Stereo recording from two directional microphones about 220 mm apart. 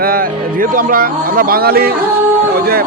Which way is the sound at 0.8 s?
40° right (ahead or behind).